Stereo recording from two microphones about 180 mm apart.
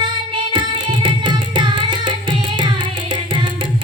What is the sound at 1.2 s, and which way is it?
Music, 25° right (ahead or behind).